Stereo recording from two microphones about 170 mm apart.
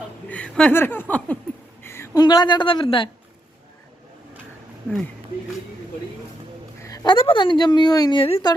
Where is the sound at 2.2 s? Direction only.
25° left (ahead or behind).